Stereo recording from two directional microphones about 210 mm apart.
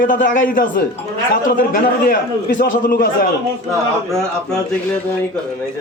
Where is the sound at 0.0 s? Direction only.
40° left (ahead or behind).